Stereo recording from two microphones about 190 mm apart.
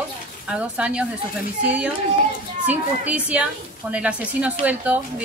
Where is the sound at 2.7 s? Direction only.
5° right (ahead or behind).